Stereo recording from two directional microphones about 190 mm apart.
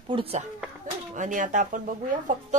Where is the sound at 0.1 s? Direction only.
30° right (ahead or behind).